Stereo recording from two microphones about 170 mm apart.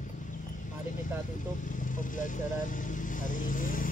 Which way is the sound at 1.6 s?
50° left (ahead or behind).